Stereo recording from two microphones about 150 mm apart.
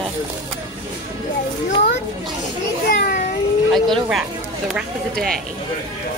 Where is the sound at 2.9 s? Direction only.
90° left.